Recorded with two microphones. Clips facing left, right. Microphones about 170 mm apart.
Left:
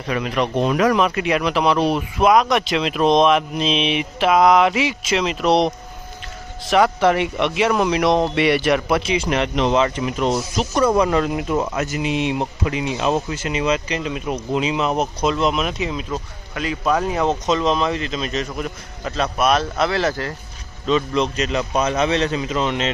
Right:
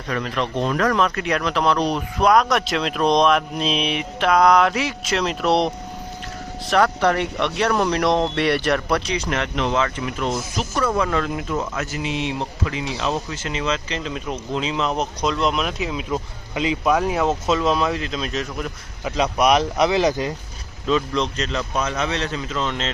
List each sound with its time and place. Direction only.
0.1 s speech: 10° left (ahead or behind); by 16.1 s 5° right (ahead or behind)
16.1 s speech: 20° right (ahead or behind)
16.9 s speech: 5° right (ahead or behind)
19.1 s speech: 15° right (ahead or behind)
20.8 s speech: 5° left (ahead or behind)
21.8 s speech: 20° left (ahead or behind)